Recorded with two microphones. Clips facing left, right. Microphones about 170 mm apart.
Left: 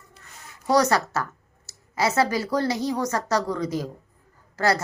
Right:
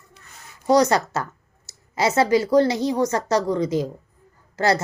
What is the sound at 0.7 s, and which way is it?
A woman's voice, 20° right (ahead or behind).